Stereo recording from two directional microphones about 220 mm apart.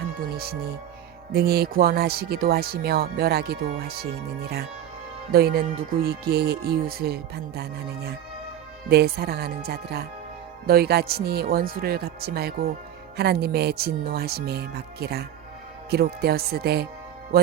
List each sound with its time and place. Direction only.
1.3 s speech: 45° right (ahead or behind)